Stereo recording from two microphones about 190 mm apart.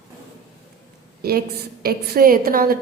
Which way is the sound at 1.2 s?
55° right (ahead or behind).